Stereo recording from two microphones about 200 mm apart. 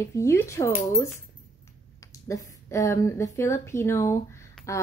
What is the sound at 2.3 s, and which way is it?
A woman's voice, 15° left (ahead or behind).